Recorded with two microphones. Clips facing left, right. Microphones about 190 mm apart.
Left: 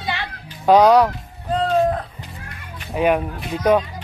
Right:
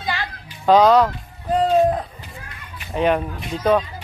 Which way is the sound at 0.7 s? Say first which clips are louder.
Left 1 dB; 10° left (ahead or behind).